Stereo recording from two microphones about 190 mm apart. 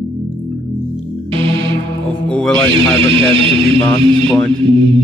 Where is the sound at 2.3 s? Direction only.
5° left (ahead or behind).